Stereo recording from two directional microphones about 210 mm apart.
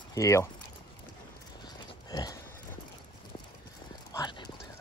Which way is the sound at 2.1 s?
20° left (ahead or behind).